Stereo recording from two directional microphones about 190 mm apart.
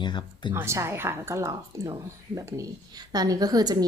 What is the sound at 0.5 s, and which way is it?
A woman's voice, 15° right (ahead or behind).